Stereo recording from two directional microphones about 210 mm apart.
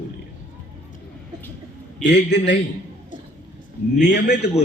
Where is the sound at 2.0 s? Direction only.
55° left (ahead or behind).